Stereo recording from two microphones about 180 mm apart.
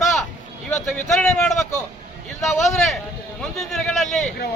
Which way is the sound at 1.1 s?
5° left (ahead or behind).